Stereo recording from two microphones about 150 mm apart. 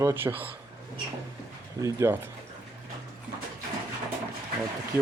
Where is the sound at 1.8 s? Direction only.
20° right (ahead or behind).